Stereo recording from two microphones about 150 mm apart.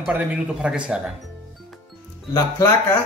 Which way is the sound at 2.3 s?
20° left (ahead or behind).